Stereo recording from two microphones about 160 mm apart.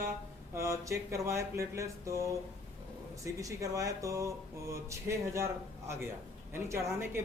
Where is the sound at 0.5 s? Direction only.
20° right (ahead or behind).